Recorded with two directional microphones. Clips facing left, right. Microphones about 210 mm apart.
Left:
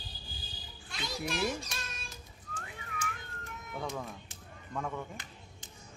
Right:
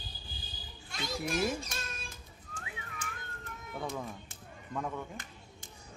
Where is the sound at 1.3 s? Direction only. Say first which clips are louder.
Right 2 dB; 50° right (ahead or behind).